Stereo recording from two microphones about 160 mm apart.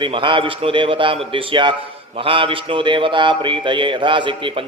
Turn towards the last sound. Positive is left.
turn(degrees=-30)  # may be behind; listen again after turning